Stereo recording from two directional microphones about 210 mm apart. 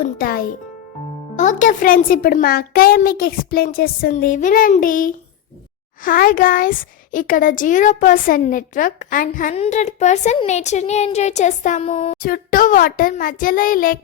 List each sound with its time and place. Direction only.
0.0 s a child's voice: 45° left (ahead or behind); by 12.2 s 30° left (ahead or behind)
12.2 s a child's voice: 40° left (ahead or behind)